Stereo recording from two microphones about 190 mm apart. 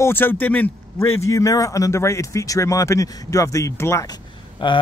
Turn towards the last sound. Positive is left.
turn(degrees=25)  # may be behind; listen again after turning